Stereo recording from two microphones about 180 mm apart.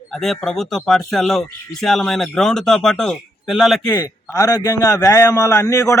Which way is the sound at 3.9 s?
20° left (ahead or behind).